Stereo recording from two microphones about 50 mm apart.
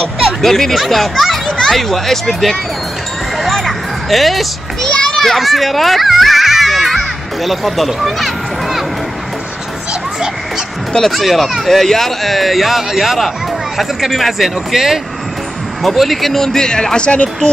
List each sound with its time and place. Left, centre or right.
0.2 s a child's voice: centre
3.5 s music: centre
4.8 s children playing: centre
7.4 s speech: centre
11.1 s a child's voice: centre; by 17.5 s left